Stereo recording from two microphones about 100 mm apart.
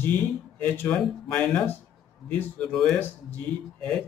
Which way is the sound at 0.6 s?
15° left (ahead or behind).